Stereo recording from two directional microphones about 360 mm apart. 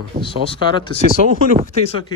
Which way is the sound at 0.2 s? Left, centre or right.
Centre.